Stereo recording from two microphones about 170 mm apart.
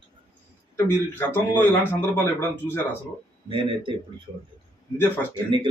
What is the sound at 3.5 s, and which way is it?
Speech, 30° right (ahead or behind).